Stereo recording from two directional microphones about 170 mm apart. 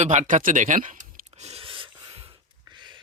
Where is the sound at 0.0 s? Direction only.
45° right (ahead or behind).